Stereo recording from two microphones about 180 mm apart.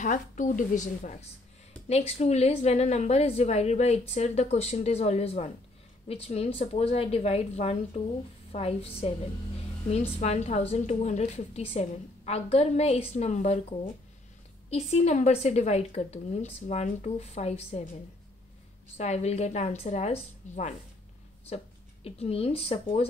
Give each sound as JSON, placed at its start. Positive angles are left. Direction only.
{"t": 0.0, "sound": "a woman's voice", "side_deg": 45}
{"t": 18.9, "sound": "a woman's voice", "side_deg": 35}
{"t": 22.0, "sound": "a woman's voice", "side_deg": 35}